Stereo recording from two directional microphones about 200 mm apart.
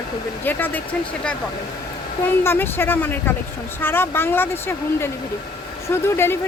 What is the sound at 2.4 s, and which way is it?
Speech, 10° left (ahead or behind).